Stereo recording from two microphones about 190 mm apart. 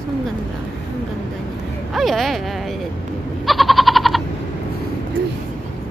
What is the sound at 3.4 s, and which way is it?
Goat, centre (ahead or behind).